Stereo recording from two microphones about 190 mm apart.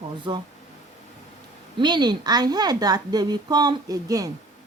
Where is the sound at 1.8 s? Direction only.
25° right (ahead or behind).